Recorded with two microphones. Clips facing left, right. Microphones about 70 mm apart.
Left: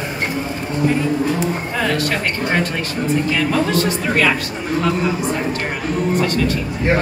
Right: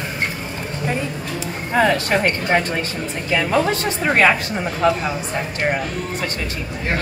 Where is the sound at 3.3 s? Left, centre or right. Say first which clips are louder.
Even; right.